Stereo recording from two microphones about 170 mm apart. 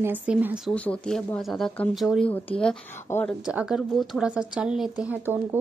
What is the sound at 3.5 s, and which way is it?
Speech, 5° right (ahead or behind).